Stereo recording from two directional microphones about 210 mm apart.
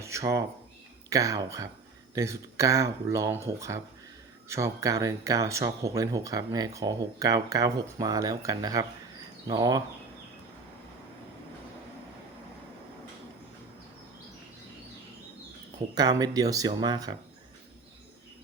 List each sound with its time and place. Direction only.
0.0 s speech: 15° right (ahead or behind)
16.0 s speech: 20° right (ahead or behind)